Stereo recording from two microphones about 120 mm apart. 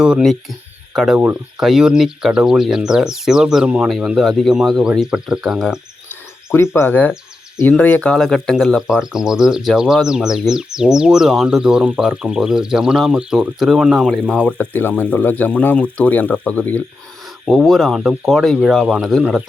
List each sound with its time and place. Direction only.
0.0 s speech: 5° right (ahead or behind)
6.1 s a sound: 20° left (ahead or behind)
7.6 s speech: 15° left (ahead or behind)
17.4 s speech: 5° right (ahead or behind)